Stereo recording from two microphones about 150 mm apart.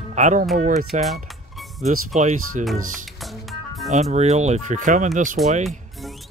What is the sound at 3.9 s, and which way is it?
Speech, 50° right (ahead or behind).